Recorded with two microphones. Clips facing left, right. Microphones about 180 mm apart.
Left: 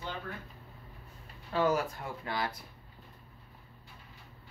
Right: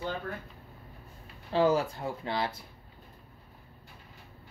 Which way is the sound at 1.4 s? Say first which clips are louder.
Right 4 dB; 30° right (ahead or behind).